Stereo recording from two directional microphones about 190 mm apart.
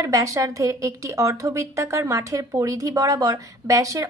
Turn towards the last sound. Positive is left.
turn(degrees=-15)  # may be behind; listen again after turning